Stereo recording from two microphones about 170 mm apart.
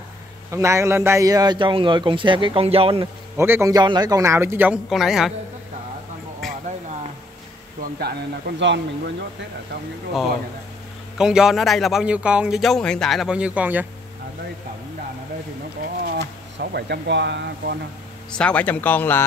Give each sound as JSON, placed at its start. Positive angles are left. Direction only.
{"t": 0.5, "sound": "a man's voice", "side_deg": -15}
{"t": 3.3, "sound": "speech", "side_deg": -15}
{"t": 6.4, "sound": "a sound", "side_deg": 0}
{"t": 7.8, "sound": "speech", "side_deg": -65}
{"t": 11.1, "sound": "speech", "side_deg": -5}
{"t": 16.0, "sound": "speech", "side_deg": -70}
{"t": 18.3, "sound": "speech", "side_deg": 5}